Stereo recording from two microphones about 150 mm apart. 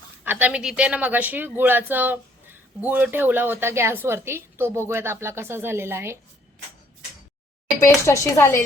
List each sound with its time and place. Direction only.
0.3 s speech: 10° right (ahead or behind)
7.8 s speech: 20° left (ahead or behind)